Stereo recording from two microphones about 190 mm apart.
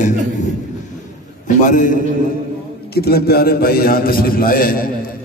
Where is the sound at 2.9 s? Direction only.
55° left (ahead or behind).